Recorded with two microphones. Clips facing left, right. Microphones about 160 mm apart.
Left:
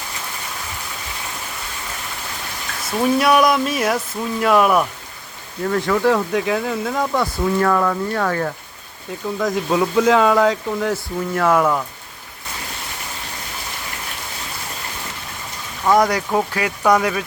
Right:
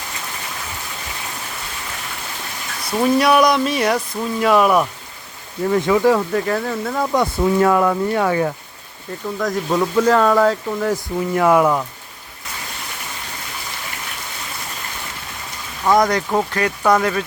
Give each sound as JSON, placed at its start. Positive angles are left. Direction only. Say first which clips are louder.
{"t": 3.0, "sound": "speech", "louder": "right 1 dB", "side_deg": 0}
{"t": 5.6, "sound": "speech", "louder": "right 2 dB", "side_deg": -10}
{"t": 6.3, "sound": "speech", "louder": "even", "side_deg": 5}
{"t": 7.1, "sound": "speech", "louder": "right 3 dB", "side_deg": -15}
{"t": 9.0, "sound": "speech", "louder": "left 1 dB", "side_deg": 5}
{"t": 15.8, "sound": "speech", "louder": "even", "side_deg": 10}